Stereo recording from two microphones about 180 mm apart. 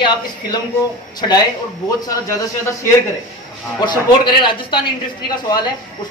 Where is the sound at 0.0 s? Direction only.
25° left (ahead or behind).